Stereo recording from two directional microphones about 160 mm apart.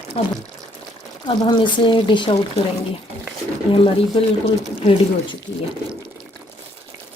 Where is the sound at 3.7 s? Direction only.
35° left (ahead or behind).